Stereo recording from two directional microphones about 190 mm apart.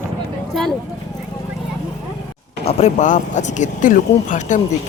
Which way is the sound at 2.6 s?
35° left (ahead or behind).